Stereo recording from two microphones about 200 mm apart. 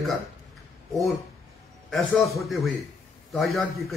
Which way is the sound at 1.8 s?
Centre (ahead or behind).